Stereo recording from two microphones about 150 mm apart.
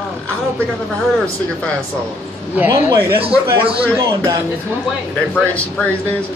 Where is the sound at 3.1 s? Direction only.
35° right (ahead or behind).